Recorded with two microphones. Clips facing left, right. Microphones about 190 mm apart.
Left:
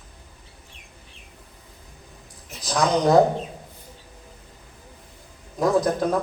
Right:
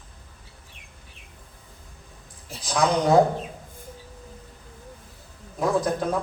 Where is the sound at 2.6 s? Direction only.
40° left (ahead or behind).